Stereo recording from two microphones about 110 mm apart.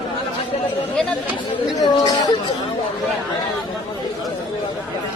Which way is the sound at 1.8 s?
35° left (ahead or behind).